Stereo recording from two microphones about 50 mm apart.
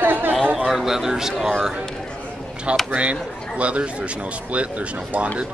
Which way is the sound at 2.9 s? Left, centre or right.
Right.